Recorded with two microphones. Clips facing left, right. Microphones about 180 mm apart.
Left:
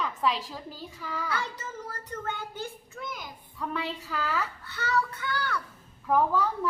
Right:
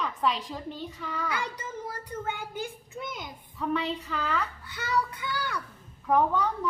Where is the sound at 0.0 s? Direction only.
Centre (ahead or behind).